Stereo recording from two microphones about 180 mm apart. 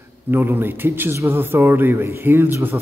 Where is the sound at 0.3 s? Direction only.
10° right (ahead or behind).